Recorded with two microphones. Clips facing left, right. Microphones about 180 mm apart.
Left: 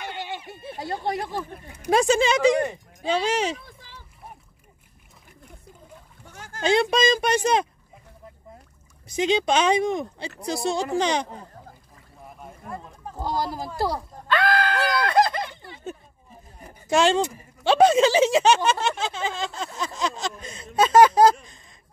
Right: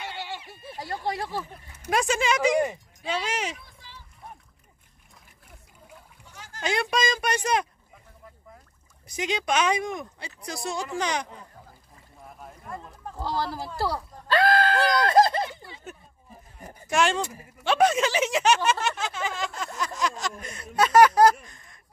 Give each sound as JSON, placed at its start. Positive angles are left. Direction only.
{"t": 0.0, "sound": "a sound", "side_deg": 15}
{"t": 0.7, "sound": "speech", "side_deg": 20}
{"t": 1.9, "sound": "speech", "side_deg": 30}
{"t": 6.3, "sound": "a sound", "side_deg": 50}
{"t": 6.6, "sound": "speech", "side_deg": 25}
{"t": 9.0, "sound": "speech", "side_deg": 25}
{"t": 12.4, "sound": "boat", "side_deg": 5}
{"t": 13.1, "sound": "speech", "side_deg": 15}
{"t": 14.2, "sound": "screaming", "side_deg": -30}
{"t": 16.9, "sound": "speech", "side_deg": 30}